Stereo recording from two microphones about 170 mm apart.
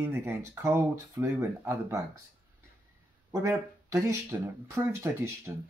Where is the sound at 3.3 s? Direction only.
15° right (ahead or behind).